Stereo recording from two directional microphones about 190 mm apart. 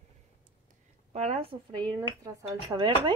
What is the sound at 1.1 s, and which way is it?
Speech, 35° right (ahead or behind).